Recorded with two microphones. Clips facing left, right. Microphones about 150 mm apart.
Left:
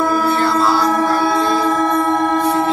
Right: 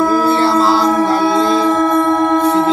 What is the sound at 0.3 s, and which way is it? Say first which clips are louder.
Music: right 3 dB; 30° right (ahead or behind).